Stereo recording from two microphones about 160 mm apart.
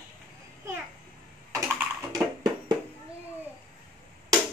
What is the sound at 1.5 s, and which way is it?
Typing, 20° right (ahead or behind).